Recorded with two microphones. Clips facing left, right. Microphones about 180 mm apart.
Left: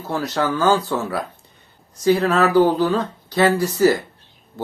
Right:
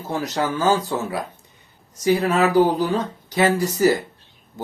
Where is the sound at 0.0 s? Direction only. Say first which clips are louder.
Left 2 dB; 20° right (ahead or behind).